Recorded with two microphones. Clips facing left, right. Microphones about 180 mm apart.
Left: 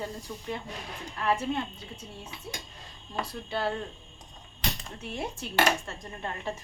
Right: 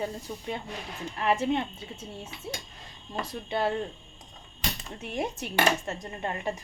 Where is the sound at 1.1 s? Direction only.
20° right (ahead or behind).